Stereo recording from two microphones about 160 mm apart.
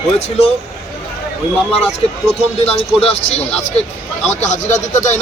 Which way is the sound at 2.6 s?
40° left (ahead or behind).